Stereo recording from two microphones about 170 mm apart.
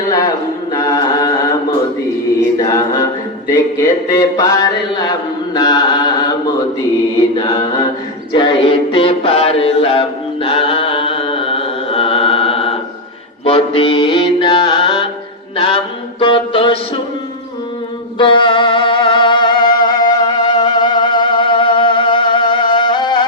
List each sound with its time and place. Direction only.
0.7 s chant: 25° left (ahead or behind)
2.6 s a capella: 20° left (ahead or behind)
4.1 s mantra: 20° left (ahead or behind)
8.3 s music: 30° left (ahead or behind)
13.4 s mantra: 30° left (ahead or behind)
16.2 s music: 30° left (ahead or behind)
18.2 s music: 30° left (ahead or behind)